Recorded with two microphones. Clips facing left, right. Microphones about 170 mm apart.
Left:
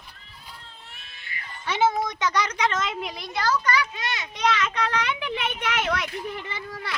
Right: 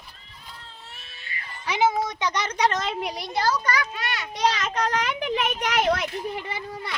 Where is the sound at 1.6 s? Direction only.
10° right (ahead or behind).